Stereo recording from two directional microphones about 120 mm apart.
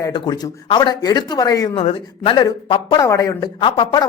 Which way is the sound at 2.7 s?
40° left (ahead or behind).